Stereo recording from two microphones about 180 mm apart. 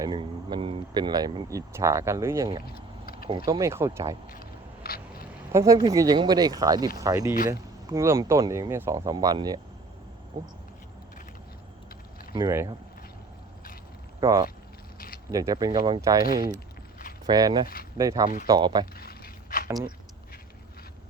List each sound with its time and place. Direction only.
0.0 s speech: 25° right (ahead or behind)
2.6 s vehicle: 55° left (ahead or behind)
3.2 s speech: 30° right (ahead or behind)
4.3 s a sound: 55° left (ahead or behind)
5.5 s speech: 15° right (ahead or behind)
12.3 s speech: 15° right (ahead or behind)
14.2 s speech: 20° right (ahead or behind)
14.9 s a sound: 55° left (ahead or behind)
15.3 s speech: 20° right (ahead or behind)
17.2 s speech: 25° right (ahead or behind)
18.9 s a sound: 55° left (ahead or behind)